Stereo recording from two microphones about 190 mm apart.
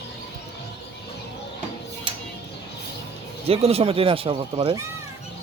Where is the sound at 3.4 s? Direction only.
30° right (ahead or behind).